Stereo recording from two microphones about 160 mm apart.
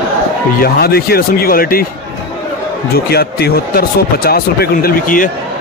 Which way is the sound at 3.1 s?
80° left.